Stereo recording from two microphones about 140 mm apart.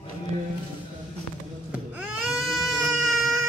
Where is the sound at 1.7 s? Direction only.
10° right (ahead or behind).